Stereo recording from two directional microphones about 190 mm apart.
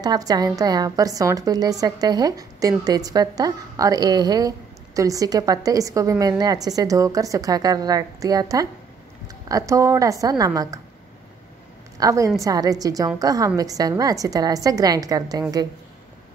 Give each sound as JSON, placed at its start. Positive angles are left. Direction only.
{"t": 0.0, "sound": "a woman's voice", "side_deg": -20}
{"t": 12.0, "sound": "a woman's voice", "side_deg": -15}